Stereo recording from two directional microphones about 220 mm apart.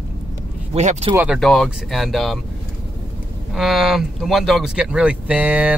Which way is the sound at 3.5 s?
Centre (ahead or behind).